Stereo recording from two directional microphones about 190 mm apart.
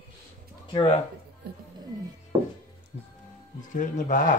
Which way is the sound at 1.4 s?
60° right (ahead or behind).